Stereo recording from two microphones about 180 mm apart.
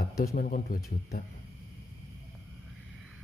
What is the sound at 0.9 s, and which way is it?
Speech, 60° left (ahead or behind).